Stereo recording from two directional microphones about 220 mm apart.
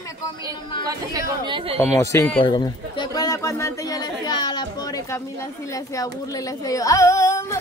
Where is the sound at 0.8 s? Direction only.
20° right (ahead or behind).